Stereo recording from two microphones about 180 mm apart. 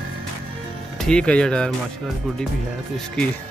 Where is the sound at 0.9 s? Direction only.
5° left (ahead or behind).